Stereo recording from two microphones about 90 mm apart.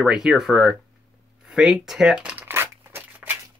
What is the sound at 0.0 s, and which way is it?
Speech, 5° right (ahead or behind).